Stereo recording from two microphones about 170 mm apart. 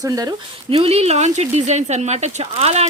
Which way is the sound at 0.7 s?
35° right (ahead or behind).